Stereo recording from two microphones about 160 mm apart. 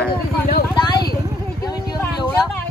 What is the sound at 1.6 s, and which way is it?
Speech, 25° left (ahead or behind).